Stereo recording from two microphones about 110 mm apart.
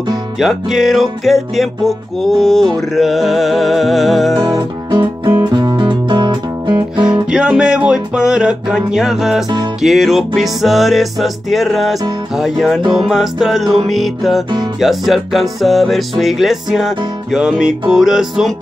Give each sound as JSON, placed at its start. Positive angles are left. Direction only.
{"t": 0.4, "sound": "music", "side_deg": -5}
{"t": 5.4, "sound": "music", "side_deg": -40}
{"t": 7.2, "sound": "music", "side_deg": -10}